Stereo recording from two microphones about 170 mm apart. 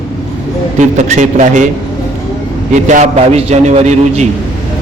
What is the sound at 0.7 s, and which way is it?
Speech, 45° right (ahead or behind).